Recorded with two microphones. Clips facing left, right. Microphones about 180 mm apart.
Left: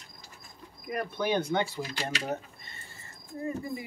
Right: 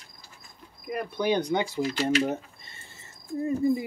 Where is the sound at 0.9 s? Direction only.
15° right (ahead or behind).